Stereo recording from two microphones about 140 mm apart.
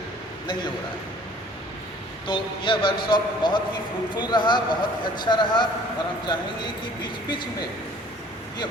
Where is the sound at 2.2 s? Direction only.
35° left (ahead or behind).